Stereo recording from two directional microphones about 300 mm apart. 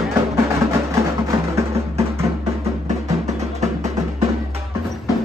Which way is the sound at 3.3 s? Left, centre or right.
Right.